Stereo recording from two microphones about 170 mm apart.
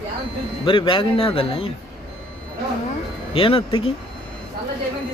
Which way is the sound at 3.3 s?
30° left (ahead or behind).